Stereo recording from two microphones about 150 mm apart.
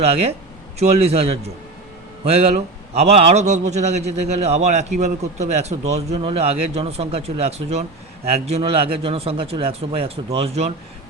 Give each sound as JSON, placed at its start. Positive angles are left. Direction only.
{"t": 0.0, "sound": "a man's voice", "side_deg": -40}